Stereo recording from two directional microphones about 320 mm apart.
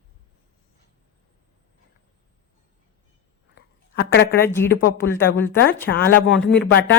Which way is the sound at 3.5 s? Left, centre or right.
Left.